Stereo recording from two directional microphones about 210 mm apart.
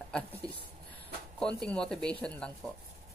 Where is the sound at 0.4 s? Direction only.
20° right (ahead or behind).